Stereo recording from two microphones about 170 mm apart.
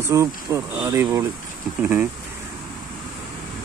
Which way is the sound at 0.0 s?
15° right (ahead or behind).